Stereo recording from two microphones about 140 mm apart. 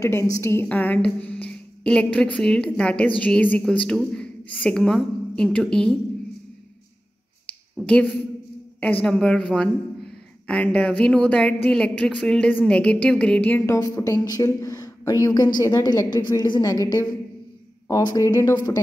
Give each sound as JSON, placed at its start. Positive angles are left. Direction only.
{"t": 0.0, "sound": "speech", "side_deg": 20}
{"t": 7.8, "sound": "a woman's voice", "side_deg": 10}
{"t": 13.7, "sound": "a woman's voice", "side_deg": 25}
{"t": 17.8, "sound": "a woman's voice", "side_deg": 25}